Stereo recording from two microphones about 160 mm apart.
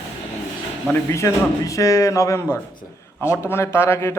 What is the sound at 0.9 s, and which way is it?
A man's voice, 20° left (ahead or behind).